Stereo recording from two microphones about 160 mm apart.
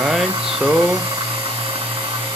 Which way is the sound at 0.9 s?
35° right (ahead or behind).